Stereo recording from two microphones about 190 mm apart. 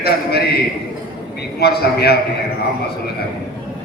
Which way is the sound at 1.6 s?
55° left (ahead or behind).